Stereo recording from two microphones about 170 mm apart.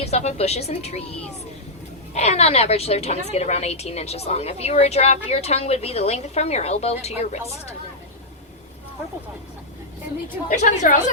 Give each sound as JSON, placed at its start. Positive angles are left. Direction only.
{"t": 0.0, "sound": "a woman's voice", "side_deg": 40}
{"t": 2.1, "sound": "a woman's voice", "side_deg": 40}
{"t": 10.5, "sound": "a woman's voice", "side_deg": 45}